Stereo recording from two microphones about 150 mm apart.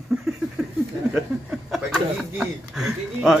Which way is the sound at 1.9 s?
5° right (ahead or behind).